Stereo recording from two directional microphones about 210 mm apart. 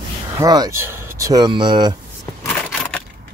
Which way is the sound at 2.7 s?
5° left (ahead or behind).